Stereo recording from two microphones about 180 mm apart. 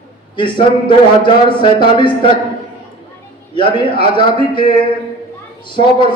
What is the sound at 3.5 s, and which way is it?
Speech, 25° left (ahead or behind).